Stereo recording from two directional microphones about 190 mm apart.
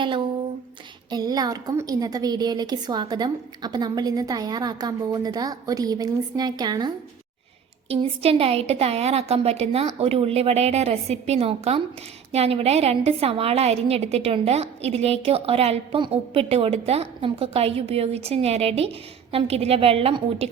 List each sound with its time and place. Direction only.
1.1 s a woman's voice: 20° right (ahead or behind)